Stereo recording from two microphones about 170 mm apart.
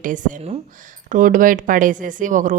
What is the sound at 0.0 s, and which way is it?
Speech, 50° right (ahead or behind).